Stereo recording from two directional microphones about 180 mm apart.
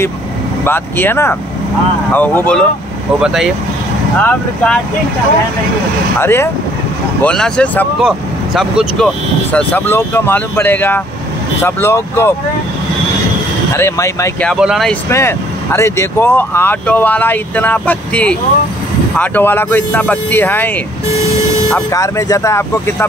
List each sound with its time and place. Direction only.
0.7 s speech: 10° left (ahead or behind)
3.2 s speech: 5° right (ahead or behind)
4.2 s speech: 10° left (ahead or behind)
6.2 s speech: 15° left (ahead or behind)
13.7 s speech: 15° left (ahead or behind)
14.4 s speech: centre (ahead or behind)
15.0 s speech: 15° left (ahead or behind)
21.9 s speech: 20° left (ahead or behind)